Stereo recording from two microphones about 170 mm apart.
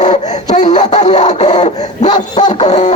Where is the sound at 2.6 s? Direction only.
40° left (ahead or behind).